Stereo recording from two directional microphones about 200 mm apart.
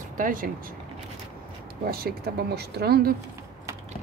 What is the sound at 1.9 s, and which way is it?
Speech, 50° right (ahead or behind).